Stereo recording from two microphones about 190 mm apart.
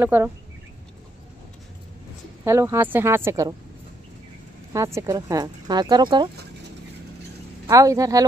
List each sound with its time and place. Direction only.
0.0 s speech: 10° right (ahead or behind)
2.4 s speech: 15° right (ahead or behind)
4.7 s speech: 15° right (ahead or behind)
7.6 s speech: 15° right (ahead or behind)